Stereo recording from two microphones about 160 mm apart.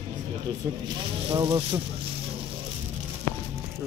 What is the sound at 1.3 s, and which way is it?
Speech, 25° right (ahead or behind).